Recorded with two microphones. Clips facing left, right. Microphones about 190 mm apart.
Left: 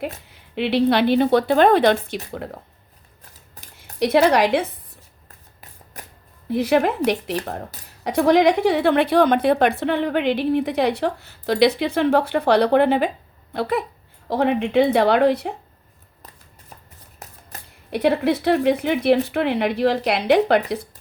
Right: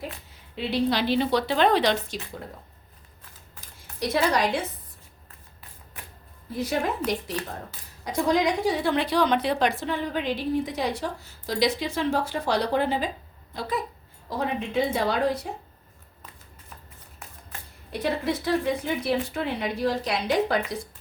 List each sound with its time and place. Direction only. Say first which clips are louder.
0.5 s a woman's voice: left 7 dB; 70° left (ahead or behind)
3.6 s a sound: left 4 dB; 40° left (ahead or behind)
4.0 s a woman's voice: left 8 dB; 65° left (ahead or behind)
5.5 s shuffling cards: left 4 dB; 40° left (ahead or behind)
6.5 s a woman's voice: left 8 dB; 65° left (ahead or behind)
17.5 s a sound: left 3 dB; 40° left (ahead or behind)
17.9 s speech: left 8 dB; 60° left (ahead or behind)